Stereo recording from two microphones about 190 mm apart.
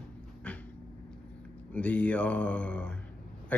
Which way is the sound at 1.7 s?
5° left (ahead or behind).